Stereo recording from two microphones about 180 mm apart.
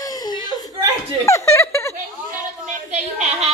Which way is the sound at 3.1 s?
35° right (ahead or behind).